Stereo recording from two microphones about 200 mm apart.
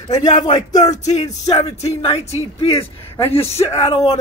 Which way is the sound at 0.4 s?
20° left (ahead or behind).